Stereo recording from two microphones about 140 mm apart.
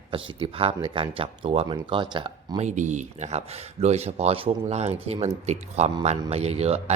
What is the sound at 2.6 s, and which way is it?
Speech, 60° right (ahead or behind).